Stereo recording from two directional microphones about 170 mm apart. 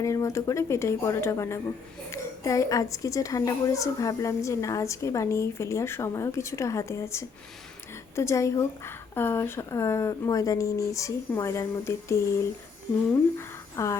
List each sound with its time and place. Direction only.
0.0 s a woman's voice: 20° left (ahead or behind)
13.7 s a woman's voice: 15° left (ahead or behind)